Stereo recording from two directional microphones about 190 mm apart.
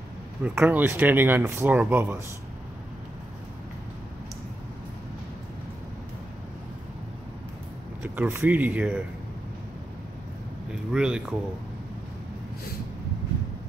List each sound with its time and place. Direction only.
0.4 s speech: 10° right (ahead or behind)
8.0 s speech: 10° right (ahead or behind)
10.7 s speech: 5° right (ahead or behind)